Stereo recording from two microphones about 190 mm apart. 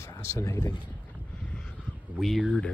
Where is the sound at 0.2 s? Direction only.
15° left (ahead or behind).